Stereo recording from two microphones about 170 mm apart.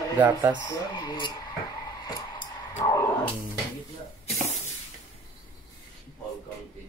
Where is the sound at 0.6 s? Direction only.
25° left (ahead or behind).